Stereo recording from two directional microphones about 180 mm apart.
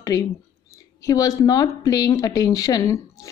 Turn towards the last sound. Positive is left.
turn(degrees=20)  # may be behind; listen again after turning